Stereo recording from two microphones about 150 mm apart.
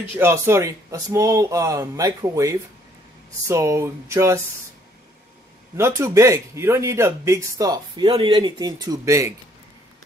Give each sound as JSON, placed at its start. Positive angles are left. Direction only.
{"t": 0.2, "sound": "speech", "side_deg": -20}
{"t": 5.8, "sound": "speech", "side_deg": -20}